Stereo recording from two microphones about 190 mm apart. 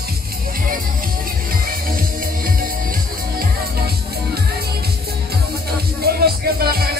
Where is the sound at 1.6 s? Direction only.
50° right (ahead or behind).